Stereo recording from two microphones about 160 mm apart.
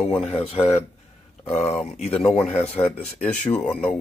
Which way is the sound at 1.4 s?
40° left (ahead or behind).